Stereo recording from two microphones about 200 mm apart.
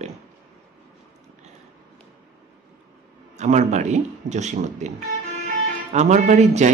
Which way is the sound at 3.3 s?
35° right (ahead or behind).